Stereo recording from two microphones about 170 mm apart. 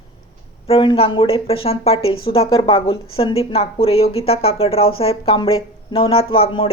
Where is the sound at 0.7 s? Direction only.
30° left (ahead or behind).